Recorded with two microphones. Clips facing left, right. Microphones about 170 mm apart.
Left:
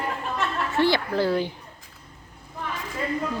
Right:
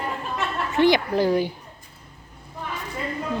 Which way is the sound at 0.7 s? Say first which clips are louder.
Right 4 dB; 15° right (ahead or behind).